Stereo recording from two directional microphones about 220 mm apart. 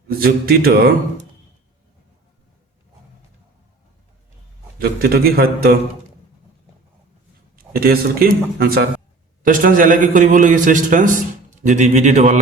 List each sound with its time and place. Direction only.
0.2 s a man's voice: 45° right (ahead or behind)
4.8 s a man's voice: 45° right (ahead or behind)
7.5 s a man's voice: 45° right (ahead or behind)